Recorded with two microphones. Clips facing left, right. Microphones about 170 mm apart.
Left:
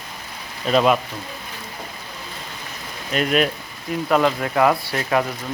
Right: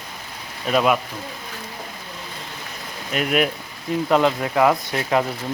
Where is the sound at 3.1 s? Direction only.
10° right (ahead or behind).